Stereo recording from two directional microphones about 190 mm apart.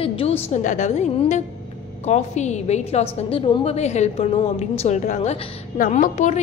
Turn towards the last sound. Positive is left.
turn(degrees=40)  # may be behind; listen again after turning